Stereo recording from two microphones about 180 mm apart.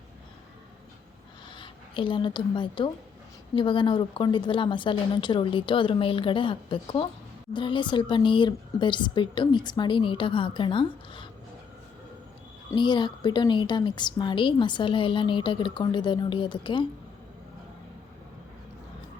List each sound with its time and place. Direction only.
1.5 s a woman's voice: 25° left (ahead or behind)
12.7 s a woman's voice: 25° left (ahead or behind)